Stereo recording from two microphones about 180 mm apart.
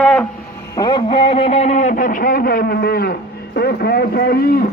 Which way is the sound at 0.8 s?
25° left (ahead or behind).